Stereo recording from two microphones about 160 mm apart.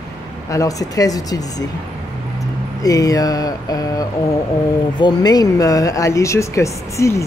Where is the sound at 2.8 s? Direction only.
20° left (ahead or behind).